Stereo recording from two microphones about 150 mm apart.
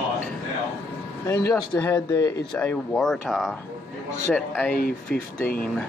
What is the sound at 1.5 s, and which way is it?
Speech, 10° left (ahead or behind).